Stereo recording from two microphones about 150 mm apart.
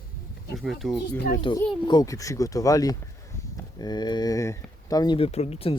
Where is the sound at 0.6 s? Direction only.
Centre (ahead or behind).